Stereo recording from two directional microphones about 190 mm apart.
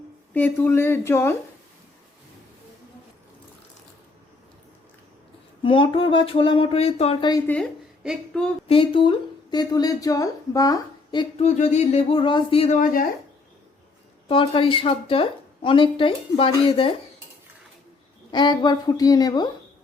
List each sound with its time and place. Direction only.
0.3 s speech: 10° left (ahead or behind)
5.6 s a woman's voice: 25° left (ahead or behind)
7.4 s speech: 5° left (ahead or behind)
8.6 s speech: 30° left (ahead or behind)
11.4 s a woman's voice: 35° left (ahead or behind)
14.3 s a woman's voice: 25° left (ahead or behind)
18.3 s a woman's voice: 20° left (ahead or behind)